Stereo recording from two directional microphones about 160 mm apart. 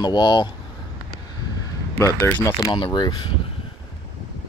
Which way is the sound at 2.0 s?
15° left (ahead or behind).